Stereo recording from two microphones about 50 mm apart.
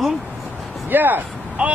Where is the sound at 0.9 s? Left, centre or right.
Right.